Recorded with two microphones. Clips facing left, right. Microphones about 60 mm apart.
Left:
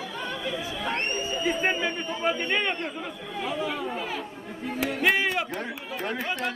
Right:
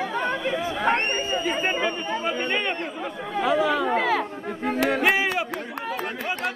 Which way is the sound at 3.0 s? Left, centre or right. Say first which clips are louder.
Right 7 dB; right.